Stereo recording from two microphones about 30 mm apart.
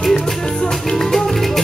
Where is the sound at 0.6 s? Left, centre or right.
Left.